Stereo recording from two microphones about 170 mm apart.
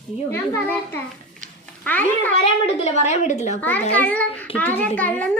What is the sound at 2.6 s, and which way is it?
Speech, 40° left (ahead or behind).